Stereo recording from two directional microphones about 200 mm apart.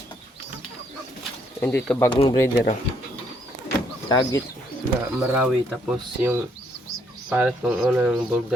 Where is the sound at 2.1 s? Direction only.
25° left (ahead or behind).